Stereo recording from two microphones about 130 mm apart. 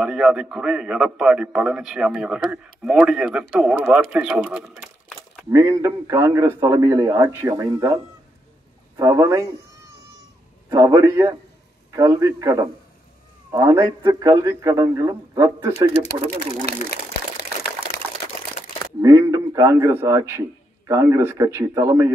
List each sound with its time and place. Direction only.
0.0 s a man's voice: 5° right (ahead or behind)
5.5 s a man's voice: 25° right (ahead or behind)
18.9 s a man's voice: 20° right (ahead or behind)